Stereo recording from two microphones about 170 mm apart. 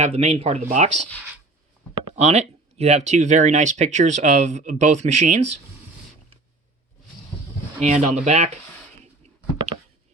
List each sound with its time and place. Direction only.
0.0 s speech: 40° right (ahead or behind)
2.0 s speech: 35° right (ahead or behind)
7.8 s speech: 40° right (ahead or behind)
9.6 s a sound: 30° right (ahead or behind)